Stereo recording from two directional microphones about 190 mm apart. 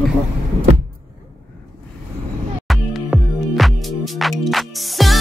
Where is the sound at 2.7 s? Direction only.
Centre (ahead or behind).